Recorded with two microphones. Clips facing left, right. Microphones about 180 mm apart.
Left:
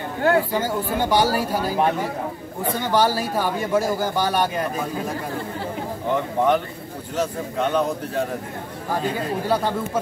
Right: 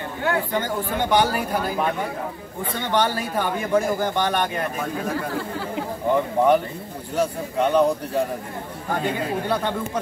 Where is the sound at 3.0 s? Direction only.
40° left (ahead or behind).